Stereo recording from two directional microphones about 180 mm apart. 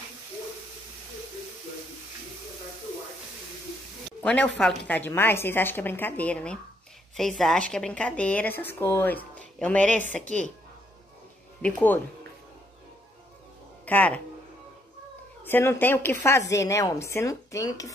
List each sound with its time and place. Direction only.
4.2 s speech: 5° left (ahead or behind)
11.6 s speech: 10° left (ahead or behind)
13.8 s speech: 10° left (ahead or behind)
15.4 s speech: 15° left (ahead or behind)